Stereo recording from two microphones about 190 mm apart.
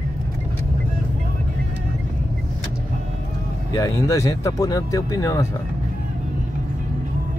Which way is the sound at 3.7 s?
20° left (ahead or behind).